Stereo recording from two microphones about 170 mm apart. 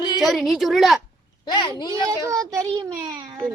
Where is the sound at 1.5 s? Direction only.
25° left (ahead or behind).